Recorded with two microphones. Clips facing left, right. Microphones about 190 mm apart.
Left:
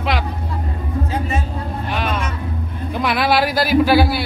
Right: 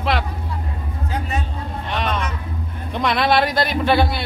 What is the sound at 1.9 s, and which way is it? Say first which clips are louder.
A man's voice: even; 5° left (ahead or behind).